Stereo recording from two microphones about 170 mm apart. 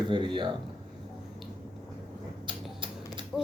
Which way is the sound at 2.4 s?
30° right (ahead or behind).